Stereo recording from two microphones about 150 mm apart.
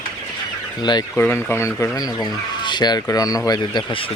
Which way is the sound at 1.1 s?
10° left (ahead or behind).